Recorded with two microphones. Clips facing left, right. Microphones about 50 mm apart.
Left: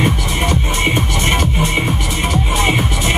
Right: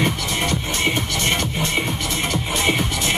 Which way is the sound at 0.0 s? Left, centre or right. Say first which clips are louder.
Left 4 dB; centre.